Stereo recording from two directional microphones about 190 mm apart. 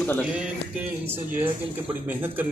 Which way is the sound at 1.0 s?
10° right (ahead or behind).